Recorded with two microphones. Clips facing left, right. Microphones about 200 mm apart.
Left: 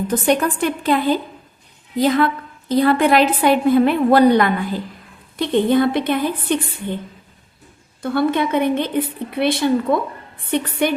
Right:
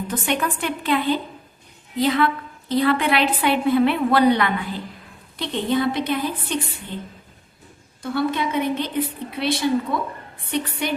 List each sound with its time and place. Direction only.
0.1 s a woman's voice: 40° left (ahead or behind)
8.0 s a woman's voice: 55° left (ahead or behind)